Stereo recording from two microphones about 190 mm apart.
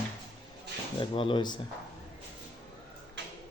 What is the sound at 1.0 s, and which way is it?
Speech, 25° left (ahead or behind).